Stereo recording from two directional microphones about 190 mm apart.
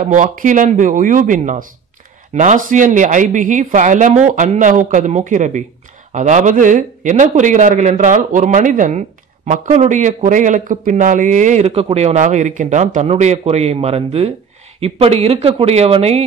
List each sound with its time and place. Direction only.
0.0 s speech: 45° right (ahead or behind)